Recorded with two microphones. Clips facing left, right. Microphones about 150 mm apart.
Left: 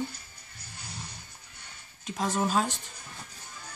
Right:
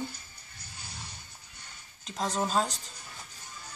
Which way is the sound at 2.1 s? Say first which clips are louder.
Left 2 dB; 5° left (ahead or behind).